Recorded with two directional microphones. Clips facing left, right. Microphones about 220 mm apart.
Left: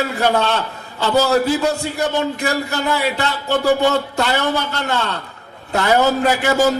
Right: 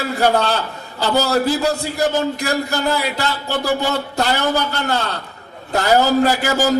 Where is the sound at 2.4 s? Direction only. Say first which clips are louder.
Even; 35° right (ahead or behind).